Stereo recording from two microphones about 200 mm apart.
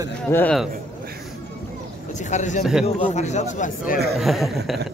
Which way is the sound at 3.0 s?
35° left (ahead or behind).